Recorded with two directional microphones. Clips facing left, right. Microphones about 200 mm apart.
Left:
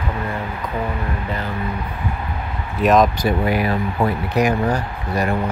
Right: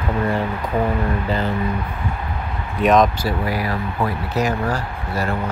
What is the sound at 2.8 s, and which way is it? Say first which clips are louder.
Speech: even; centre (ahead or behind).